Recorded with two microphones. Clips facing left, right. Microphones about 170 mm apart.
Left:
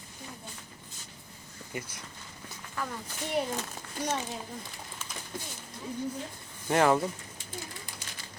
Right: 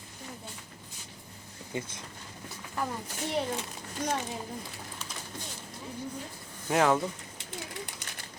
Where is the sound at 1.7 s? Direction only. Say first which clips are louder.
Right 3 dB; 25° right (ahead or behind).